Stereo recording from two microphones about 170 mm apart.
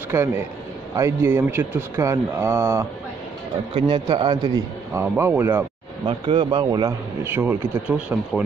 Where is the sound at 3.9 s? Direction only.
25° right (ahead or behind).